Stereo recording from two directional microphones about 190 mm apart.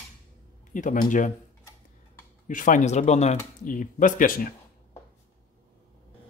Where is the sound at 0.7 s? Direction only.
45° left (ahead or behind).